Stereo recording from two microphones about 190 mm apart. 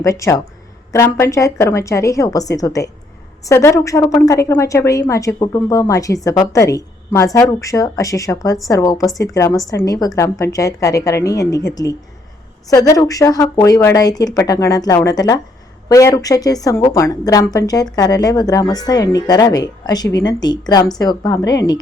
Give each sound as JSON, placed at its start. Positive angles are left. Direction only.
{"t": 0.0, "sound": "a woman's voice", "side_deg": 15}